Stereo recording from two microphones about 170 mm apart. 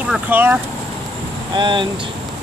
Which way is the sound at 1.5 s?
25° right (ahead or behind).